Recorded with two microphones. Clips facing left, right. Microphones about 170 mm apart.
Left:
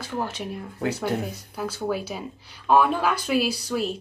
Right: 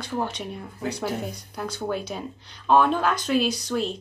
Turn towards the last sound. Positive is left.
turn(degrees=5)  # may be behind; listen again after turning